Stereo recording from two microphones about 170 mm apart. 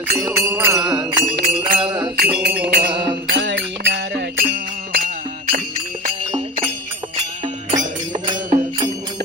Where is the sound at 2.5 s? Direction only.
75° right (ahead or behind).